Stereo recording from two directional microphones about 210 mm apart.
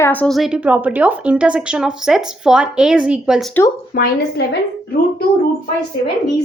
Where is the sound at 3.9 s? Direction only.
50° left (ahead or behind).